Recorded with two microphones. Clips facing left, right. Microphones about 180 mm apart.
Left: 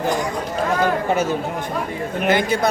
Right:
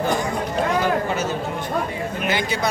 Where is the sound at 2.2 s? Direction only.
55° left (ahead or behind).